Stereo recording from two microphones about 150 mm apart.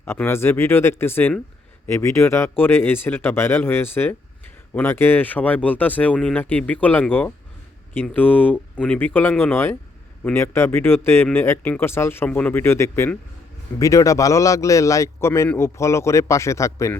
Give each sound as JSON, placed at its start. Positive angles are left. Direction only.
{"t": 0.0, "sound": "a man's voice", "side_deg": 15}